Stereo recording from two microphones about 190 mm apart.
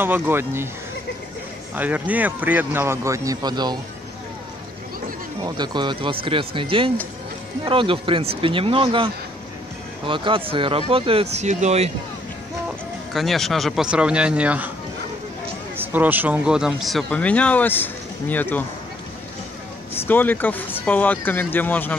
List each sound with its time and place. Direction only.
0.0 s a man's voice: 10° right (ahead or behind)
1.8 s a man's voice: 10° right (ahead or behind)
5.4 s speech: 25° right (ahead or behind)
13.1 s speech: centre (ahead or behind)
15.7 s speech: 10° right (ahead or behind); by 18.6 s 10° left (ahead or behind)
20.0 s speech: 10° left (ahead or behind)